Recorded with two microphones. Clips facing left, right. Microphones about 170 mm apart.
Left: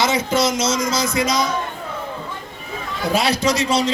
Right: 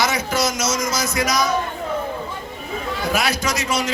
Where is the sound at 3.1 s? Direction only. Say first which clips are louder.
Left 5 dB; 30° left (ahead or behind).